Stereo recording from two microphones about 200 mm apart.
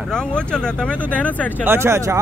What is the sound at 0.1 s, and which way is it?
Speech, 5° left (ahead or behind).